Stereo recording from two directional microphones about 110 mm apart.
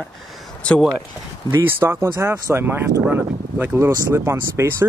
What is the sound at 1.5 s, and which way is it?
Speech, 20° right (ahead or behind).